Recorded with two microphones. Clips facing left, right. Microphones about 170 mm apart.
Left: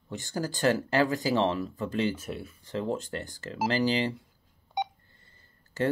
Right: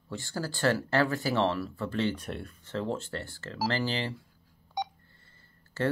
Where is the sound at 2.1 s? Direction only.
5° left (ahead or behind).